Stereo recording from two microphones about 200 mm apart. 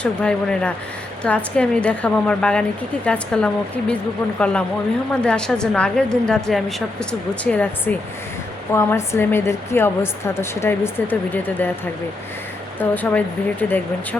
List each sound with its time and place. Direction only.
0.0 s a woman's voice: 5° left (ahead or behind)
12.9 s a woman's voice: 10° left (ahead or behind)